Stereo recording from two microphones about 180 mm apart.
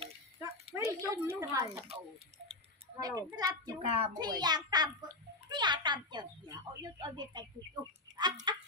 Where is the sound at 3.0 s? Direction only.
20° right (ahead or behind).